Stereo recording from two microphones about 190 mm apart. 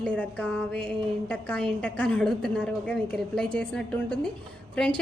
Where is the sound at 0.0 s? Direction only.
5° left (ahead or behind).